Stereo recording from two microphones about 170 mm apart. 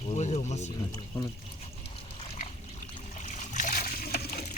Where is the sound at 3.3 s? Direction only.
50° left (ahead or behind).